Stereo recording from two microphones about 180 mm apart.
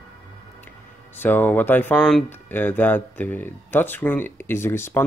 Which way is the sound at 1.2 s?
10° left (ahead or behind).